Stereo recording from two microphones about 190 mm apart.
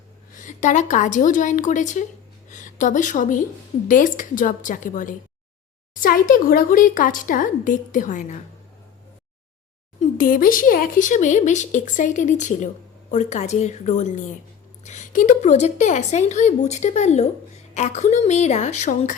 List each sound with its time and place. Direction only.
0.3 s a woman's voice: 40° left (ahead or behind)
10.0 s speech: 45° left (ahead or behind)